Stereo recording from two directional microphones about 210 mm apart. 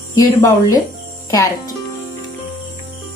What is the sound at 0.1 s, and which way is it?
Speech, 15° left (ahead or behind).